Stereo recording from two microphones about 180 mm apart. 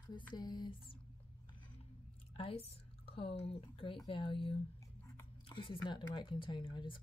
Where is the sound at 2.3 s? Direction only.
30° left (ahead or behind).